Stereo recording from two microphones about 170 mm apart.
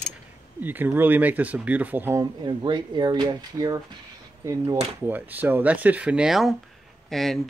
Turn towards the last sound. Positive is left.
turn(degrees=0)  # may be behind; listen again after turning